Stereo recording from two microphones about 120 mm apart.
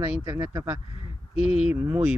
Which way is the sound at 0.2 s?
20° right (ahead or behind).